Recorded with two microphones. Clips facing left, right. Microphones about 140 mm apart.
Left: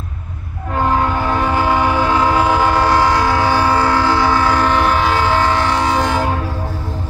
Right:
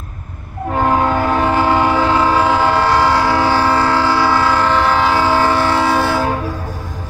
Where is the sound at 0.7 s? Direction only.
15° right (ahead or behind).